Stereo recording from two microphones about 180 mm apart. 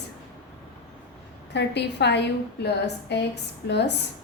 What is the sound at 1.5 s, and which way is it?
A woman's voice, 70° left (ahead or behind).